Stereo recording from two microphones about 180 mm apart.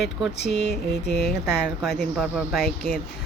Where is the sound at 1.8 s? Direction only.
Centre (ahead or behind).